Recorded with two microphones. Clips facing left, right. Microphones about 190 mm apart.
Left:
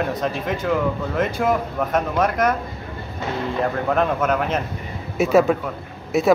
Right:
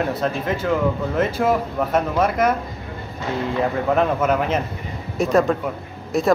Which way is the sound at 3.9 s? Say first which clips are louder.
Right 2 dB; 5° right (ahead or behind).